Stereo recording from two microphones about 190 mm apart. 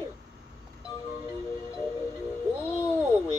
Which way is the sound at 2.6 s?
15° left (ahead or behind).